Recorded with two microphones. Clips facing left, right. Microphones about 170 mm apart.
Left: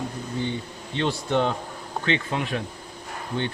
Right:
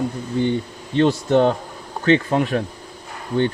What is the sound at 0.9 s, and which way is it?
Speech, 45° right (ahead or behind).